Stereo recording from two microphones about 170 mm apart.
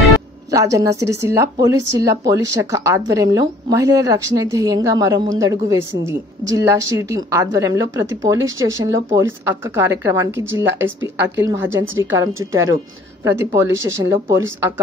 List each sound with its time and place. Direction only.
0.5 s a woman's voice: 20° right (ahead or behind)